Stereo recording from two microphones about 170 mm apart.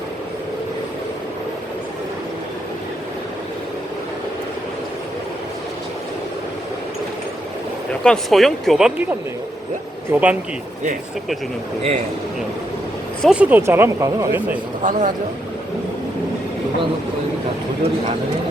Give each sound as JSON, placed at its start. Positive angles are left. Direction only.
{"t": 8.0, "sound": "speech", "side_deg": 0}
{"t": 10.1, "sound": "speech", "side_deg": -10}
{"t": 13.2, "sound": "speech", "side_deg": -10}
{"t": 14.8, "sound": "a man's voice", "side_deg": -50}